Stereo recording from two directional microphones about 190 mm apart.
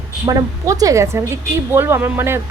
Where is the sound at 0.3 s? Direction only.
20° right (ahead or behind).